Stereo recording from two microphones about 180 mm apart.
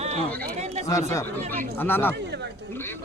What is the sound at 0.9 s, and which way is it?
Speech, 15° left (ahead or behind).